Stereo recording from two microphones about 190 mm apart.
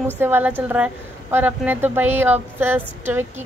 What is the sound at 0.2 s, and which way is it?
A woman's voice, 10° right (ahead or behind).